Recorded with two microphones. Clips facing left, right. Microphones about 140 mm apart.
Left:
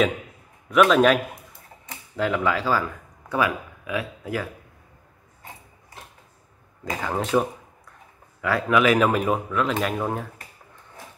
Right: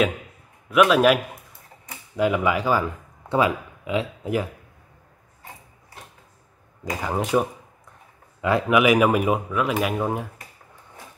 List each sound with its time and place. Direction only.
0.7 s speech: 5° right (ahead or behind)
6.8 s speech: 10° right (ahead or behind)